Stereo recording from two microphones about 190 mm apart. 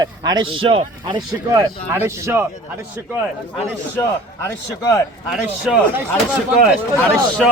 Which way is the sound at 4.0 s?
15° left (ahead or behind).